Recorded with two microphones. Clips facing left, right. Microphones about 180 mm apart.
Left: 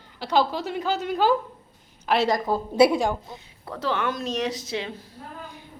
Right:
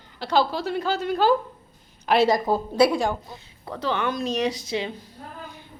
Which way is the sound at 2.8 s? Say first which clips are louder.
Left 2 dB; 20° left (ahead or behind).